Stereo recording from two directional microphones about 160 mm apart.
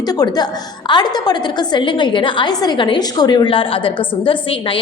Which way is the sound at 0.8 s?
30° left (ahead or behind).